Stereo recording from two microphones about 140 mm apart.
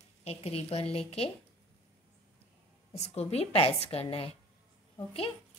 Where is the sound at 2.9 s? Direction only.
50° left (ahead or behind).